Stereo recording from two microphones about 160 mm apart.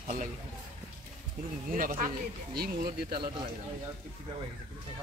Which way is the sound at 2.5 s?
75° right (ahead or behind).